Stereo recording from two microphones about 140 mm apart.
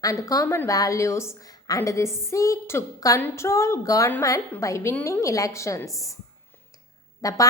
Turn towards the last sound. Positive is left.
turn(degrees=25)  # may be behind; listen again after turning